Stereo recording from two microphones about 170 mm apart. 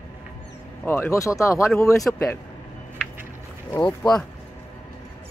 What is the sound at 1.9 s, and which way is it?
Speech, centre (ahead or behind).